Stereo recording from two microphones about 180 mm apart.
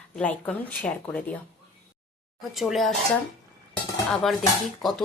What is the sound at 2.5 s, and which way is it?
Dishes, centre (ahead or behind).